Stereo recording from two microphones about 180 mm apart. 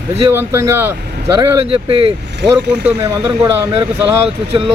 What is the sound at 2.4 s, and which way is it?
Speech, 70° right (ahead or behind).